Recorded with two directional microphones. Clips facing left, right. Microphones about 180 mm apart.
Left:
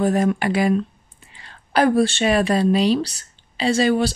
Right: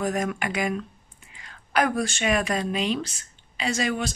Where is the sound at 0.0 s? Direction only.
35° left (ahead or behind).